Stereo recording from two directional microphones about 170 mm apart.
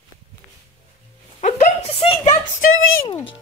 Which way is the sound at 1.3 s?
40° left (ahead or behind).